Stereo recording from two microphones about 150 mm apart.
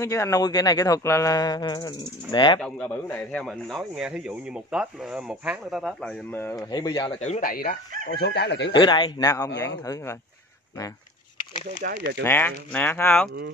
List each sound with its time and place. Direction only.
0.0 s speech: 20° left (ahead or behind)
2.6 s speech: 10° left (ahead or behind)
3.4 s speech: centre (ahead or behind)
6.7 s speech: 25° left (ahead or behind)
7.2 s speech: 65° left (ahead or behind)
8.2 s speech: 90° left
8.7 s speech: 30° left (ahead or behind)
11.8 s speech: 90° right
12.2 s speech: 15° left (ahead or behind)